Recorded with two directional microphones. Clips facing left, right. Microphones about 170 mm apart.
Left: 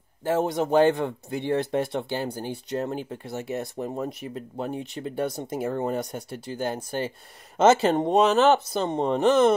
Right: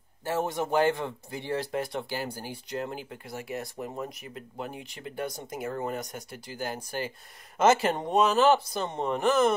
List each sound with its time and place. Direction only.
0.4 s speech: 20° left (ahead or behind)